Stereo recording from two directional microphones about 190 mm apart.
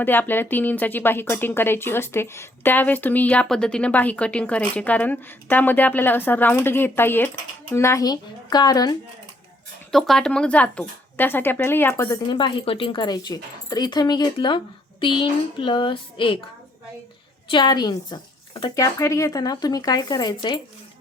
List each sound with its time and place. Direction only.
0.0 s speech: 10° left (ahead or behind)
9.9 s speech: centre (ahead or behind); by 16.4 s 25° left (ahead or behind)
17.5 s speech: 25° left (ahead or behind)